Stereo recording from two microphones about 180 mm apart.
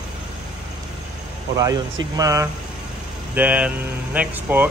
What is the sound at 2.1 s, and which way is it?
Speech, 20° right (ahead or behind).